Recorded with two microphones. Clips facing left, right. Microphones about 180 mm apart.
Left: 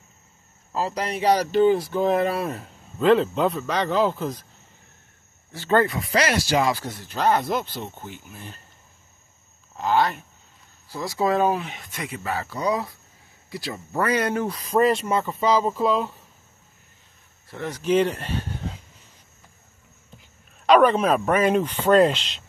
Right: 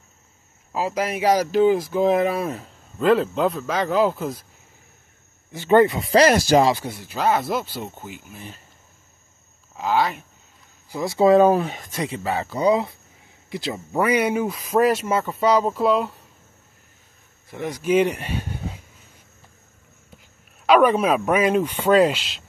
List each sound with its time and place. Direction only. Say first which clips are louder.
0.7 s speech: right 2 dB; 10° right (ahead or behind)
5.5 s speech: right 5 dB; 20° right (ahead or behind); by 6.6 s 45° right (ahead or behind)
6.8 s speech: even; 10° right (ahead or behind)
9.8 s speech: even; 5° right (ahead or behind)
10.9 s speech: right 7 dB; 20° right (ahead or behind)
11.4 s speech: right 6 dB; 45° right (ahead or behind); by 16.2 s centre (ahead or behind)
17.5 s speech: right 1 dB; 15° right (ahead or behind)
20.6 s a man's voice: even; 5° right (ahead or behind)